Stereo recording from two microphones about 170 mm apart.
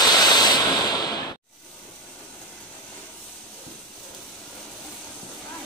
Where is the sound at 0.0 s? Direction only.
25° left (ahead or behind).